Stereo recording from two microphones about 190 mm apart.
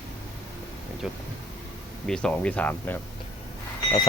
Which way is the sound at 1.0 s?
Centre (ahead or behind).